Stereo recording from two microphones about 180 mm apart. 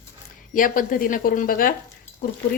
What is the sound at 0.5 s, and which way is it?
A woman's voice, 50° left (ahead or behind).